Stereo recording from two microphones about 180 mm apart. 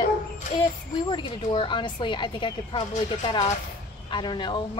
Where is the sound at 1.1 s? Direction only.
30° left (ahead or behind).